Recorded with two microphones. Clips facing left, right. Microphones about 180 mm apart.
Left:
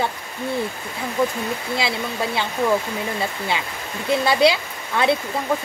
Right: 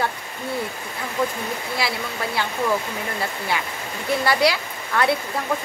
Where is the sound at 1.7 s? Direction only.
20° left (ahead or behind).